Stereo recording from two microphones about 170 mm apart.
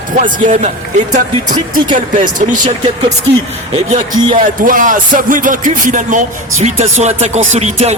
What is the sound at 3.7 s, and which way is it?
Speech, 35° right (ahead or behind).